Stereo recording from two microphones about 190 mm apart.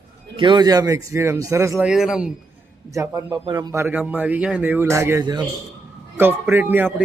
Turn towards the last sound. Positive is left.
turn(degrees=-10)  # may be behind; listen again after turning